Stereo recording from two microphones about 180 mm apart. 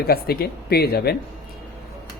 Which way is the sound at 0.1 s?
60° left (ahead or behind).